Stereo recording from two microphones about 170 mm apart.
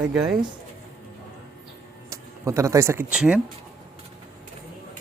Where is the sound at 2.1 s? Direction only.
20° right (ahead or behind).